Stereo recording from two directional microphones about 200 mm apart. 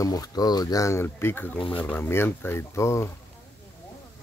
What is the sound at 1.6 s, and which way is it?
Speech, 25° left (ahead or behind).